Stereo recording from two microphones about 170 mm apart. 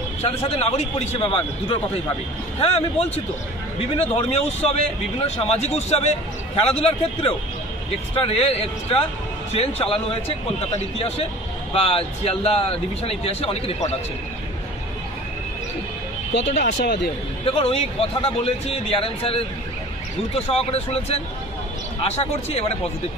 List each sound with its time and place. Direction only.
0.2 s speech: 40° left (ahead or behind)
16.4 s speech: 45° left (ahead or behind)
16.8 s speech: 90° left
17.5 s speech: 35° left (ahead or behind)